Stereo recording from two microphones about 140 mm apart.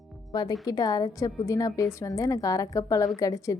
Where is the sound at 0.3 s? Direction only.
25° left (ahead or behind).